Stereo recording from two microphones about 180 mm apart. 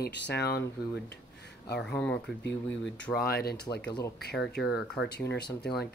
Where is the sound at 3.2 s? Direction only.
55° left (ahead or behind).